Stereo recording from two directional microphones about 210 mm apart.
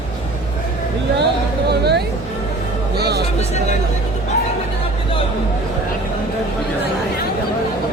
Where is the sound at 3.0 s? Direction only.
50° right (ahead or behind).